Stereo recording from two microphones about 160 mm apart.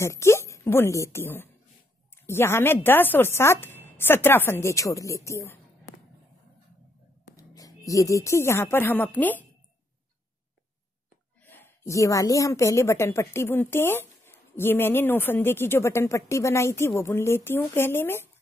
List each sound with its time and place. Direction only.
0.0 s a woman's voice: 15° left (ahead or behind)
7.3 s speech: 20° left (ahead or behind)
11.4 s a woman's voice: 10° left (ahead or behind)